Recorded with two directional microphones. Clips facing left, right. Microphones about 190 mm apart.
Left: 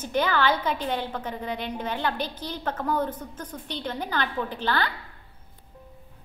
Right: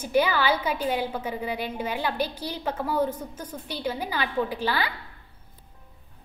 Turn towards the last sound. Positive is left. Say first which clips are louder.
# even
turn(degrees=-10)  # may be behind; listen again after turning